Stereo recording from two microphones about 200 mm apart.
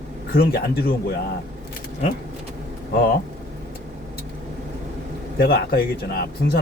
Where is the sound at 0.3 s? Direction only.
50° left (ahead or behind).